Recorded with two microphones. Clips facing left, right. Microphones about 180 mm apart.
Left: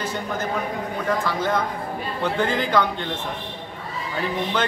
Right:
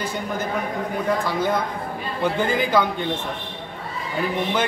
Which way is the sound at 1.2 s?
10° right (ahead or behind).